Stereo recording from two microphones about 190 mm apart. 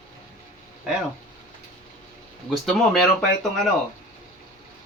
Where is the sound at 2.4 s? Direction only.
Centre (ahead or behind).